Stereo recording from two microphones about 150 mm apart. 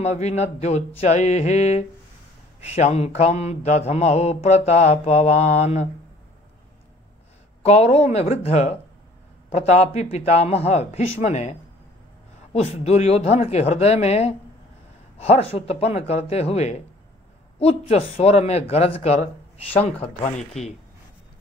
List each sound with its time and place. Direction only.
0.0 s mantra: 50° left (ahead or behind)
7.6 s mantra: 45° left (ahead or behind)
12.5 s mantra: 45° left (ahead or behind)